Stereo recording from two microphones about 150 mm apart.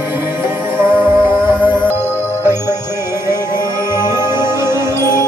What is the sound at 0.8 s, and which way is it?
Music, 15° right (ahead or behind).